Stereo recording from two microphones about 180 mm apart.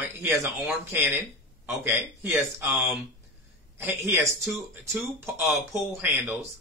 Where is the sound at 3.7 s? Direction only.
15° right (ahead or behind).